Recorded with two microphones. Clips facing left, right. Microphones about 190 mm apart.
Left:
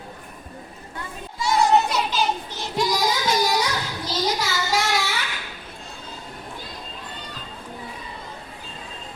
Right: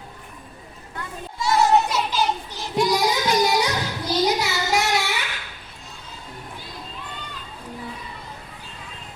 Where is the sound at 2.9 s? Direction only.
20° right (ahead or behind).